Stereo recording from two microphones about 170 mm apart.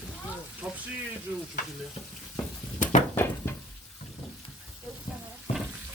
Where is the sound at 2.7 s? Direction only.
45° left (ahead or behind).